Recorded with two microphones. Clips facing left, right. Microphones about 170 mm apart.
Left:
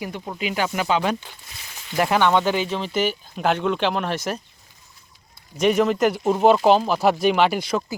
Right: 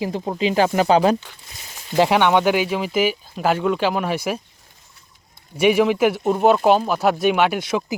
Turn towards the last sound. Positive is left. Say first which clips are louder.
# right 1 dB
turn(degrees=0)  # may be behind; listen again after turning